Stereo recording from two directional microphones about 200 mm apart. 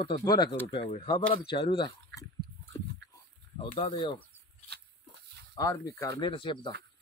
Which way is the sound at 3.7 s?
30° left (ahead or behind).